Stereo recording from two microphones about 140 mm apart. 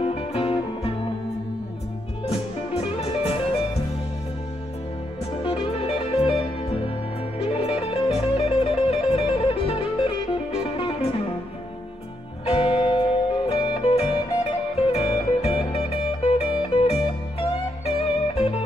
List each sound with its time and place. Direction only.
0.0 s music: 40° left (ahead or behind)
2.2 s music: 45° left (ahead or behind)
5.4 s music: 40° left (ahead or behind)
12.4 s music: 45° left (ahead or behind)